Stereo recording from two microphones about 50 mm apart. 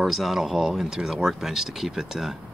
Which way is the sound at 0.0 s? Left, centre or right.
Centre.